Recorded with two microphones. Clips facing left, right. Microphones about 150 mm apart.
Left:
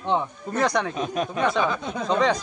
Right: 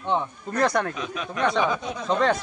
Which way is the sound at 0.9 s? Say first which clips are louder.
Left 6 dB; 45° left (ahead or behind).